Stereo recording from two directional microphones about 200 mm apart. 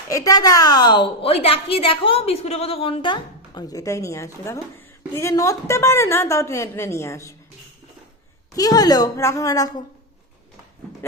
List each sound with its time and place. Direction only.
0.1 s a woman's voice: 15° left (ahead or behind)
8.5 s a woman's voice: 20° left (ahead or behind)